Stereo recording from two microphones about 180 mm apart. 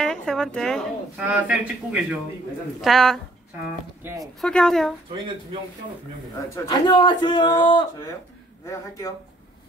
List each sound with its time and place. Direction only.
0.0 s a woman's voice: 5° left (ahead or behind)
4.2 s a woman's voice: 5° left (ahead or behind)
6.5 s speech: 20° left (ahead or behind)